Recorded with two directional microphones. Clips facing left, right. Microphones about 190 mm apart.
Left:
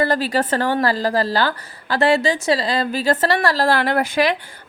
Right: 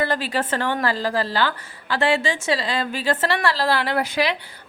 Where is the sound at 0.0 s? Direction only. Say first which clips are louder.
Left 4 dB; 40° left (ahead or behind).